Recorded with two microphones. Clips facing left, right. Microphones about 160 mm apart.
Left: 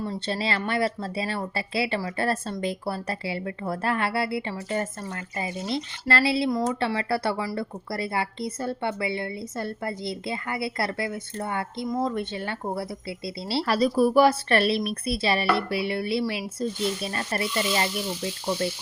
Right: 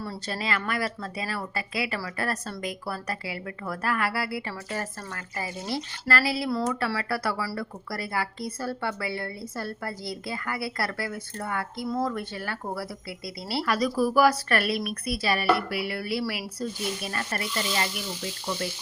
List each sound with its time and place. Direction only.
0.0 s speech: 25° left (ahead or behind)